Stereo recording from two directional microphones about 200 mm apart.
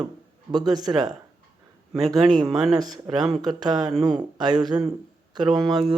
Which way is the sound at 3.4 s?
20° right (ahead or behind).